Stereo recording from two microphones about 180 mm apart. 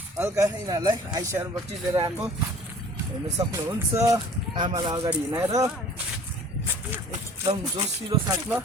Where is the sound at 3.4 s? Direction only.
20° right (ahead or behind).